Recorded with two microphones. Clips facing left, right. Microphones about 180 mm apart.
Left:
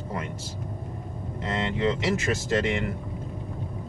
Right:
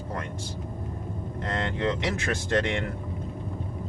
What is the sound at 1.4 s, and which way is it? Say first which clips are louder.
Speech: left 2 dB; 10° left (ahead or behind).